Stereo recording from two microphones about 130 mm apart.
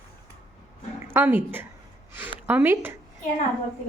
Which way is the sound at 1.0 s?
15° right (ahead or behind).